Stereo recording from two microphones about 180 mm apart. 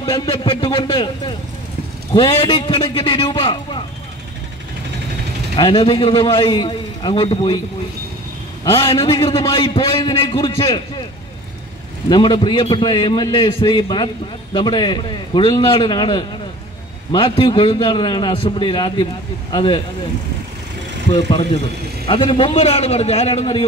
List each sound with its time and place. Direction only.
0.0 s a man's voice: 25° left (ahead or behind)
5.6 s a man's voice: 25° left (ahead or behind)
8.9 s a man's voice: 25° left (ahead or behind)
12.1 s a man's voice: 25° left (ahead or behind)
22.0 s a man's voice: 30° left (ahead or behind)